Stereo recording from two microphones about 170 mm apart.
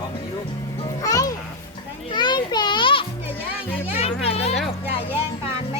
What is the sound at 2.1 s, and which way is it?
Children playing, 25° left (ahead or behind).